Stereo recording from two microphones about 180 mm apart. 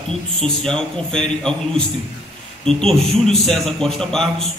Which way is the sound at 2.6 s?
5° left (ahead or behind).